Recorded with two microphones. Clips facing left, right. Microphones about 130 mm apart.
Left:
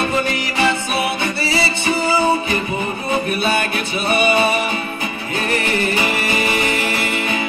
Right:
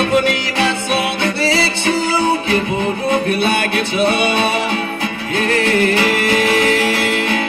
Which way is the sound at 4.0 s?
85° right.